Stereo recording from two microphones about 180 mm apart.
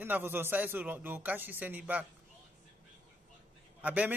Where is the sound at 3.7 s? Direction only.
10° right (ahead or behind).